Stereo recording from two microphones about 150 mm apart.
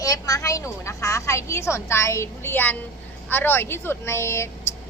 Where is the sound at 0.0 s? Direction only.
25° left (ahead or behind).